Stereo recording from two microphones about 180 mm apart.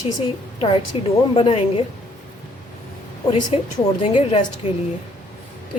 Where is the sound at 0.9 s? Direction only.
30° left (ahead or behind).